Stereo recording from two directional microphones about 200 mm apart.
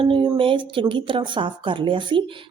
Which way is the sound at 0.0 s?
25° right (ahead or behind).